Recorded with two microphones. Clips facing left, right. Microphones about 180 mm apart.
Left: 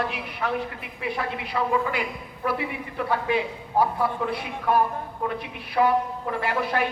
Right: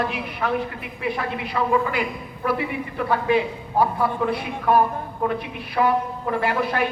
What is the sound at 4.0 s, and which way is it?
Speech, 45° right (ahead or behind).